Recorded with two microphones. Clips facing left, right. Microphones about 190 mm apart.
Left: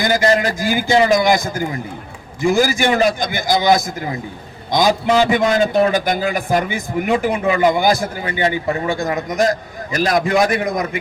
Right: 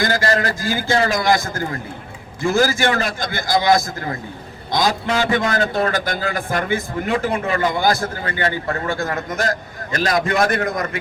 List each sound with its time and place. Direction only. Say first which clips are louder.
0.0 s a man's voice: left 3 dB; 20° left (ahead or behind)
3.7 s a man's voice: left 1 dB; centre (ahead or behind)
4.7 s a man's voice: left 5 dB; 20° left (ahead or behind)
9.9 s a man's voice: left 3 dB; centre (ahead or behind)